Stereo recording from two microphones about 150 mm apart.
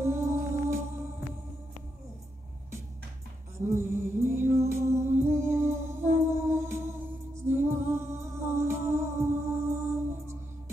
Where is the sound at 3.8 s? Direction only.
15° right (ahead or behind).